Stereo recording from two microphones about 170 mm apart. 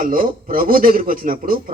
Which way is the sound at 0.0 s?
55° right (ahead or behind).